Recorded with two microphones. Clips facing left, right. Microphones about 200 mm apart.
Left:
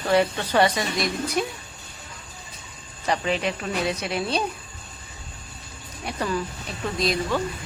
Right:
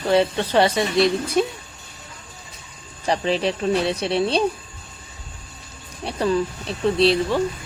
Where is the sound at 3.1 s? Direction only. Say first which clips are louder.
Right 3 dB; 30° right (ahead or behind).